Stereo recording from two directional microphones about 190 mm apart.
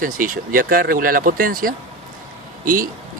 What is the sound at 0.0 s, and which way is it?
Speech, 45° right (ahead or behind).